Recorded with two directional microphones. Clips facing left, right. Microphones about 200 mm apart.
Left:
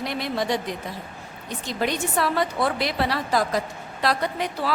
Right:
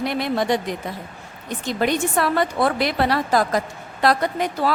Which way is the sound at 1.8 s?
50° right (ahead or behind).